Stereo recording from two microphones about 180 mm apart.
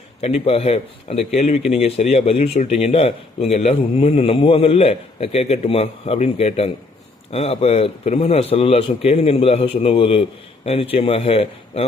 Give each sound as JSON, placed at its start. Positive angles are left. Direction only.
{"t": 0.2, "sound": "speech", "side_deg": 35}